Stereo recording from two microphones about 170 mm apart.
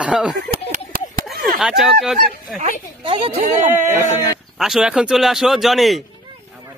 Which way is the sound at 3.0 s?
35° right (ahead or behind).